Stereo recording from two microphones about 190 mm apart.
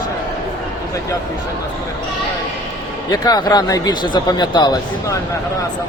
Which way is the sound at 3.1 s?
20° left (ahead or behind).